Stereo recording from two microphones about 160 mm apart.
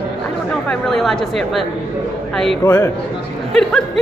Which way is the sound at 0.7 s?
Centre (ahead or behind).